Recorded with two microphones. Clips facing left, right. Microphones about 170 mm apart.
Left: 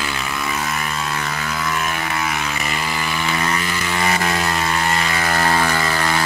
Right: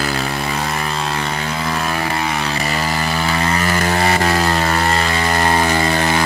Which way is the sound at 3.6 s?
50° right (ahead or behind).